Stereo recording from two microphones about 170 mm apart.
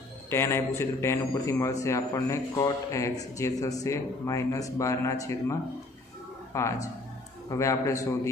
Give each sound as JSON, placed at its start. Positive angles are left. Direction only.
{"t": 0.3, "sound": "a man's voice", "side_deg": 15}